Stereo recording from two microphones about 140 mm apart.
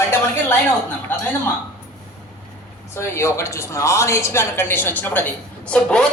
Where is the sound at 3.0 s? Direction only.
20° left (ahead or behind).